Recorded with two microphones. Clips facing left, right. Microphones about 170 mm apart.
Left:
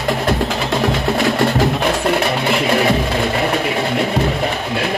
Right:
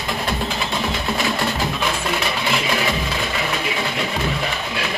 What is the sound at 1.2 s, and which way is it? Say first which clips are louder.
Music: left 7 dB; 60° left (ahead or behind).